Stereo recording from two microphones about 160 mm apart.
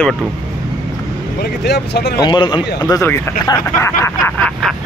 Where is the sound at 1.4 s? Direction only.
90° left.